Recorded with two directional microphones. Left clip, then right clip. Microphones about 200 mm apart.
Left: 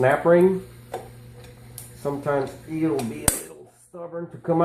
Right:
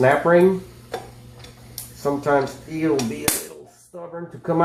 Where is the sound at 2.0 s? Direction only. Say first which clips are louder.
Right 5 dB; 25° left (ahead or behind).